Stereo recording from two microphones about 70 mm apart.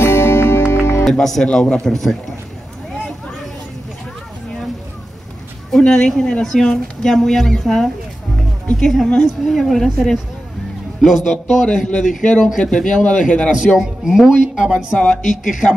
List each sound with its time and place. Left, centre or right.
0.0 s music: left
1.0 s speech: centre
5.7 s a woman's voice: centre
13.7 s speech: centre
15.6 s speech: left